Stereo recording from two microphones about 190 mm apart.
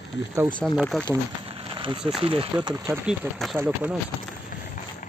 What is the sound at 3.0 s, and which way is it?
Speech, centre (ahead or behind).